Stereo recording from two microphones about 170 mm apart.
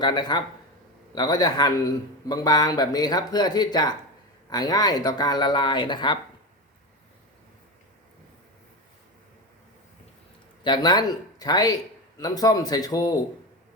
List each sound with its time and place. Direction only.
0.0 s a man's voice: 25° left (ahead or behind)
10.6 s a man's voice: 25° left (ahead or behind)